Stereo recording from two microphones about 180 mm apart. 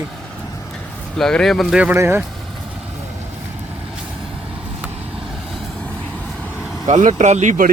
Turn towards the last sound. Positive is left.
turn(degrees=-45)  # may be behind; listen again after turning